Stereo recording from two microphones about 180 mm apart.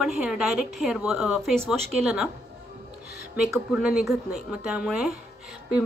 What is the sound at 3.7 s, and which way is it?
A woman's voice, 5° right (ahead or behind).